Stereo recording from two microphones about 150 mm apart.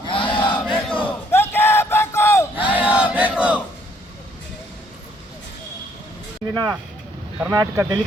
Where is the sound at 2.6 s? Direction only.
10° right (ahead or behind).